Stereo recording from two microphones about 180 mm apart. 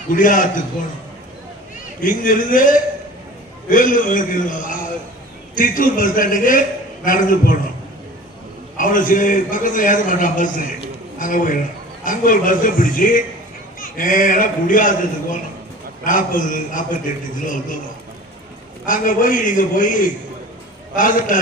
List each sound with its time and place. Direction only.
0.1 s a man's voice: 50° left (ahead or behind)
2.0 s a man's voice: 50° left (ahead or behind)
8.8 s a man's voice: 50° left (ahead or behind)
18.9 s a man's voice: 50° left (ahead or behind)
20.9 s a man's voice: 50° left (ahead or behind)